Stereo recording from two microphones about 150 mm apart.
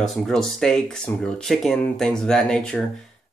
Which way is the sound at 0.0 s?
Centre (ahead or behind).